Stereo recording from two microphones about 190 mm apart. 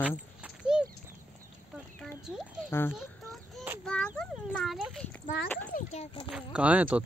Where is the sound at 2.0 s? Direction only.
Centre (ahead or behind).